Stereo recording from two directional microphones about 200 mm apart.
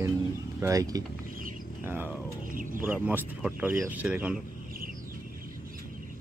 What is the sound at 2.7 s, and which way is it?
Speech, 10° right (ahead or behind).